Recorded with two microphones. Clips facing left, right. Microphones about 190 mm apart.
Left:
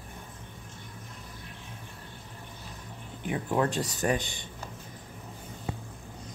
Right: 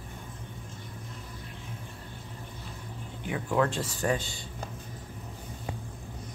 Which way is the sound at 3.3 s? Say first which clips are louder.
Even; 25° left (ahead or behind).